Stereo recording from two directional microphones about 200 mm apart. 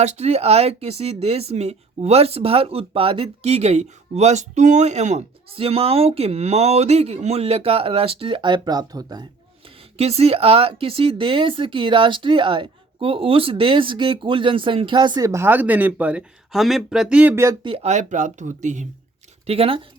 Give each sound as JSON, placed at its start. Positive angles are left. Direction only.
{"t": 0.0, "sound": "speech", "side_deg": -35}
{"t": 9.6, "sound": "speech", "side_deg": -30}